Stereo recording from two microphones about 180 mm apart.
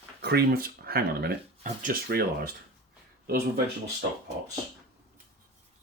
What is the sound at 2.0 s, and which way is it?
Speech, 60° right (ahead or behind).